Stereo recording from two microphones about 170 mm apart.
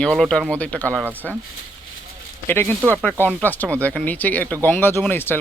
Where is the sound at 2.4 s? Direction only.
15° left (ahead or behind).